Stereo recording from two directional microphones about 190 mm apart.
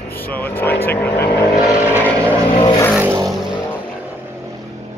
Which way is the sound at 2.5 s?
25° left (ahead or behind).